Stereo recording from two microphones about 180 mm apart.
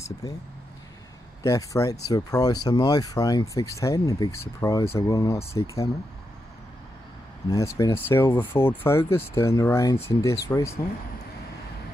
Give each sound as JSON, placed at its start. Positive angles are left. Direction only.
{"t": 0.2, "sound": "speech", "side_deg": 20}
{"t": 1.4, "sound": "speech", "side_deg": 20}
{"t": 7.4, "sound": "speech", "side_deg": 15}